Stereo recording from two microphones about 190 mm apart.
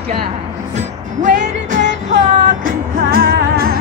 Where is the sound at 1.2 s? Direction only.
40° right (ahead or behind).